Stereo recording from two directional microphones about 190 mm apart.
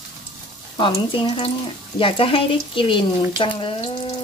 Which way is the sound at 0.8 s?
25° left (ahead or behind).